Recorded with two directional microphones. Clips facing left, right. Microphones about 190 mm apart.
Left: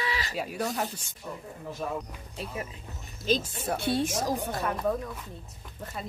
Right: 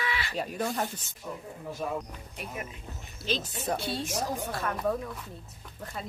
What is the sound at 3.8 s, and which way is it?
Speech, 55° left (ahead or behind).